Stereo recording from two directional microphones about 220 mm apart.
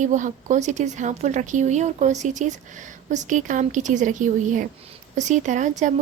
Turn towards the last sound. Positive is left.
turn(degrees=-35)  # may be behind; listen again after turning